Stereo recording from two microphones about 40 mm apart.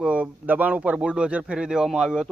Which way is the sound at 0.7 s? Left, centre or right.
Right.